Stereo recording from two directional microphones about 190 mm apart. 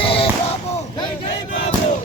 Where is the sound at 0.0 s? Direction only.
30° left (ahead or behind).